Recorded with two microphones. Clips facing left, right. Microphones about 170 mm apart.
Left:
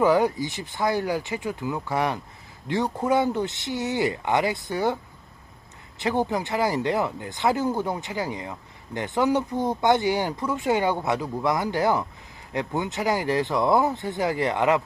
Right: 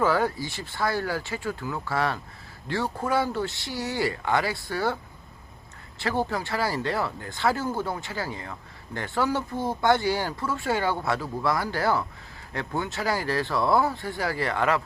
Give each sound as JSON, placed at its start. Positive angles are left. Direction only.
{"t": 0.0, "sound": "speech", "side_deg": 15}
{"t": 6.0, "sound": "speech", "side_deg": 20}